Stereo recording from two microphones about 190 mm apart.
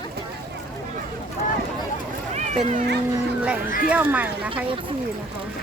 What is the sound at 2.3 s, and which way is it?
Run, 40° right (ahead or behind).